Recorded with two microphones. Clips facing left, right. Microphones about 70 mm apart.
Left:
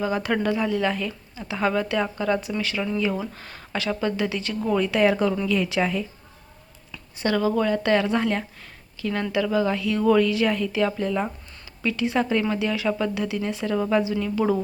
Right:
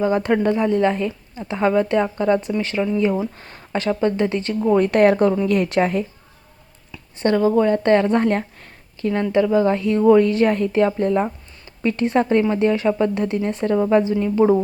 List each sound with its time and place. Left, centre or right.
0.0 s speech: right
4.8 s a woman's voice: right
7.3 s speech: right
10.2 s speech: right